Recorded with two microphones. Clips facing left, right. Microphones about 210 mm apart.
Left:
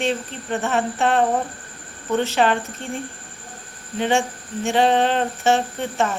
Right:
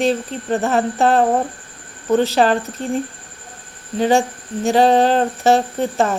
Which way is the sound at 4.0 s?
35° right (ahead or behind).